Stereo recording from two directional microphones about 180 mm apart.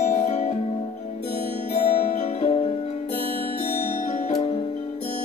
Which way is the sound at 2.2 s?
35° left (ahead or behind).